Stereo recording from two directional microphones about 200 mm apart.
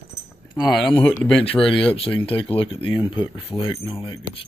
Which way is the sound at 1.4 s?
30° left (ahead or behind).